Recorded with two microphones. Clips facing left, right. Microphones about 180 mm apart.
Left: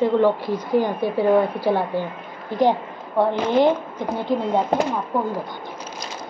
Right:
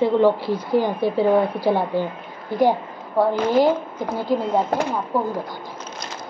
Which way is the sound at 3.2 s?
5° right (ahead or behind).